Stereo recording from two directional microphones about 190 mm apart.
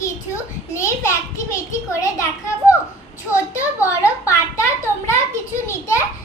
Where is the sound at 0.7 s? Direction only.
15° left (ahead or behind).